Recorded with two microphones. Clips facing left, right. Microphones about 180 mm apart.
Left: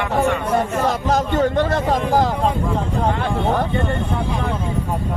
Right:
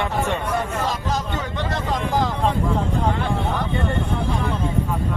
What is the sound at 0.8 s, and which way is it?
Speech, 50° left (ahead or behind).